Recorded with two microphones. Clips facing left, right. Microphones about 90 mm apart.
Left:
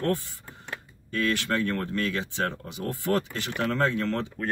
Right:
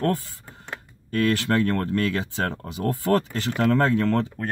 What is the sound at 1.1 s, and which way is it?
Speech, 50° right (ahead or behind).